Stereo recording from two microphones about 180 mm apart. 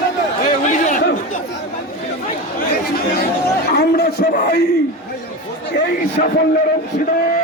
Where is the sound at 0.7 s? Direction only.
45° left (ahead or behind).